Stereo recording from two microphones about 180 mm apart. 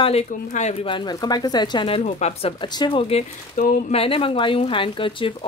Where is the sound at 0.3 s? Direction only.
40° left (ahead or behind).